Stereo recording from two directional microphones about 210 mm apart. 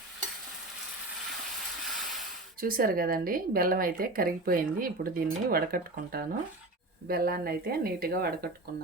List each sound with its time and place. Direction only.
2.6 s speech: 45° right (ahead or behind)